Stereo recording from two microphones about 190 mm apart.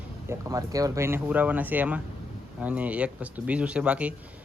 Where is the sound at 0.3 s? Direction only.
15° right (ahead or behind).